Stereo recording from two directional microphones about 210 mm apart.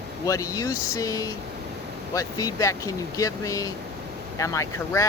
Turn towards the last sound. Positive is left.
turn(degrees=15)  # may be behind; listen again after turning